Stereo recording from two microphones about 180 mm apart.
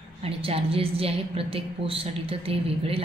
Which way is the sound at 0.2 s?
35° right (ahead or behind).